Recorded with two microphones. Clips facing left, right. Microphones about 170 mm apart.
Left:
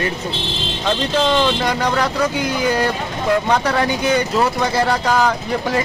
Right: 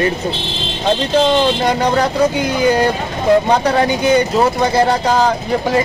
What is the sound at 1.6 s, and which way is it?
Speech, 25° right (ahead or behind).